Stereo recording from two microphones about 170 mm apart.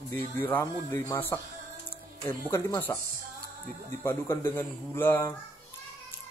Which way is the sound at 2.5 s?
15° left (ahead or behind).